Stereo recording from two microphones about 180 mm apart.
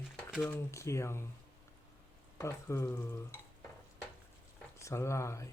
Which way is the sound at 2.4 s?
15° left (ahead or behind).